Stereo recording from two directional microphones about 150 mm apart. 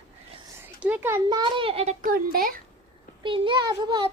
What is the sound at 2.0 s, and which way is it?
Speech, 70° right (ahead or behind).